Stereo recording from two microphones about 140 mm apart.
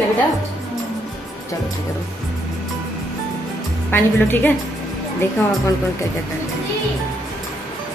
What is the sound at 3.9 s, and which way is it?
Speech, 15° left (ahead or behind).